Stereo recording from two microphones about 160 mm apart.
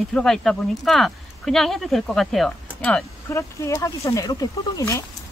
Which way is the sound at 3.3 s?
20° left (ahead or behind).